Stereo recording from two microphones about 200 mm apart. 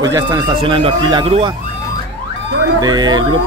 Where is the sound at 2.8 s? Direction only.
20° right (ahead or behind).